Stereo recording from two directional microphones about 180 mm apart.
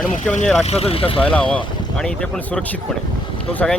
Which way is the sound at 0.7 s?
35° left (ahead or behind).